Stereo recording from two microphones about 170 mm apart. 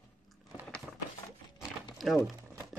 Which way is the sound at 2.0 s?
Centre (ahead or behind).